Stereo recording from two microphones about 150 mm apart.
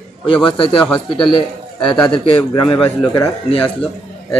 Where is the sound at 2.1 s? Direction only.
35° left (ahead or behind).